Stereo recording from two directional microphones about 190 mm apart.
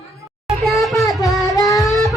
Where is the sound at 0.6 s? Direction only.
Centre (ahead or behind).